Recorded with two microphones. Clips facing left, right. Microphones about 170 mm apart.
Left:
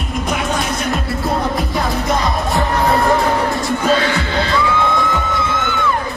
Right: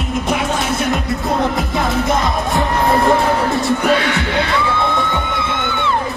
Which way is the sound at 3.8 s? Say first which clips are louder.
Even; 65° right (ahead or behind).